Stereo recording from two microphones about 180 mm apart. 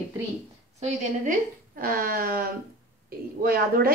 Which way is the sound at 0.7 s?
40° right (ahead or behind).